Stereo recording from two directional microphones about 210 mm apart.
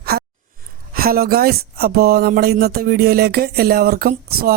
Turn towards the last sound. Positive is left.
turn(degrees=-45)  # may be behind; listen again after turning